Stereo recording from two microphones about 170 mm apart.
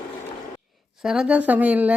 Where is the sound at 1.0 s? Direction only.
5° right (ahead or behind).